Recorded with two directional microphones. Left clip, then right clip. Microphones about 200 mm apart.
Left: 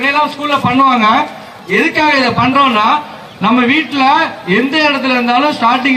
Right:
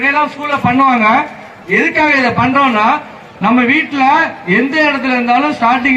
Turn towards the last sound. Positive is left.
turn(degrees=-55)  # may be behind; listen again after turning